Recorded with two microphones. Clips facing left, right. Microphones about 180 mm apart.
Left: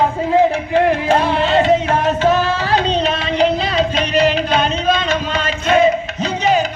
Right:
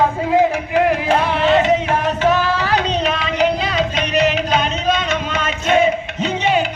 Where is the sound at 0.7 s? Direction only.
35° left (ahead or behind).